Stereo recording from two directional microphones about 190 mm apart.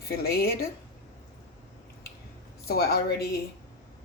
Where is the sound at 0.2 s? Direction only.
55° left (ahead or behind).